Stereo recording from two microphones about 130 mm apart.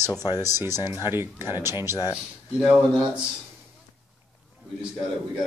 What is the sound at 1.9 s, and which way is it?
Speech, 25° left (ahead or behind).